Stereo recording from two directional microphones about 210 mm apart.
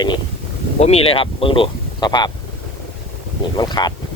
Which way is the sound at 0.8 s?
30° left (ahead or behind).